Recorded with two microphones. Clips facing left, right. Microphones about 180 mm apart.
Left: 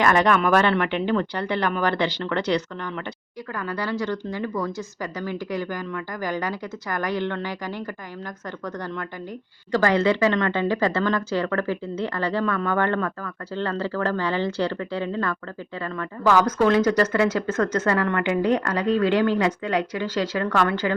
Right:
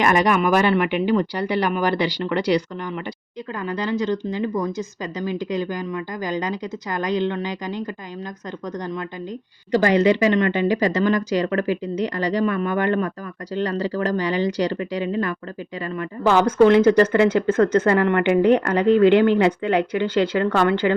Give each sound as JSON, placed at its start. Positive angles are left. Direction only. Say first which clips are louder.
{"t": 0.0, "sound": "speech", "louder": "right 1 dB", "side_deg": -15}
{"t": 3.7, "sound": "a woman's voice", "louder": "right 4 dB", "side_deg": -20}
{"t": 9.7, "sound": "speech", "louder": "right 3 dB", "side_deg": -15}
{"t": 16.0, "sound": "a woman's voice", "louder": "right 2 dB", "side_deg": -25}